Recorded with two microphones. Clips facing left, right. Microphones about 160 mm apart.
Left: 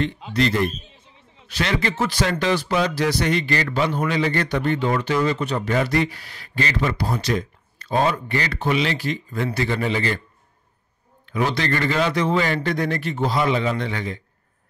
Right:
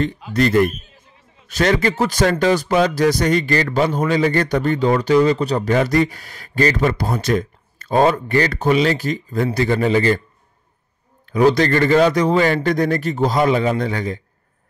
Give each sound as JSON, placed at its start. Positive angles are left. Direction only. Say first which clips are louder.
{"t": 0.3, "sound": "speech", "louder": "right 6 dB", "side_deg": -45}
{"t": 11.2, "sound": "a man's voice", "louder": "right 8 dB", "side_deg": -40}